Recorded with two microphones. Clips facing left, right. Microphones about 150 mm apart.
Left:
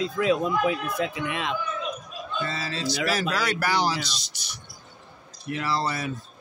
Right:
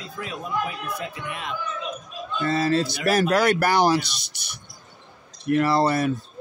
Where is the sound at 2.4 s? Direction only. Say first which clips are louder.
Right 11 dB; 50° right (ahead or behind).